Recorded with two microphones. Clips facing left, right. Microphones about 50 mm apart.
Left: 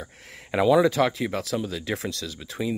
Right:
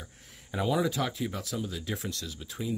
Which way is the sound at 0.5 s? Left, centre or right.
Left.